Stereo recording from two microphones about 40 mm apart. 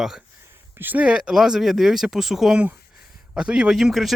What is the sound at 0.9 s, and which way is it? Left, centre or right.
Speech, right.